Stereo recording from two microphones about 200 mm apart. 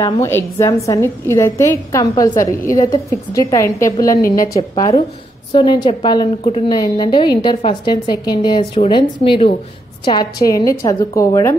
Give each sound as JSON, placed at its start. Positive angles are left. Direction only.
{"t": 0.0, "sound": "a woman's voice", "side_deg": 15}